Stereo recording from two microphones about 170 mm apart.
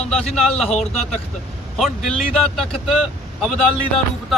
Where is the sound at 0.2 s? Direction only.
40° left (ahead or behind).